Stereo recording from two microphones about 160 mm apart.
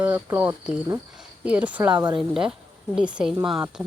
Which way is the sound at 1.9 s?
25° right (ahead or behind).